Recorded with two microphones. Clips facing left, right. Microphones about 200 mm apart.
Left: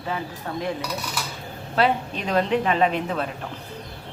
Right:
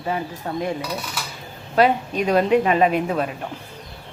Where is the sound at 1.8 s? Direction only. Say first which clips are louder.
Right 4 dB; 10° right (ahead or behind).